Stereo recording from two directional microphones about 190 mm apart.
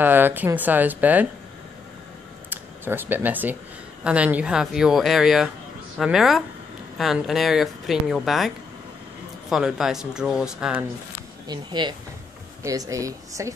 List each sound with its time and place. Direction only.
0.0 s speech: 10° right (ahead or behind)
2.5 s speech: 10° right (ahead or behind)
9.5 s speech: 5° right (ahead or behind)
11.4 s speech: 25° right (ahead or behind)